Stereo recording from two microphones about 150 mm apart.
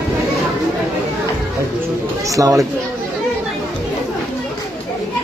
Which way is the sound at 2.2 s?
20° right (ahead or behind).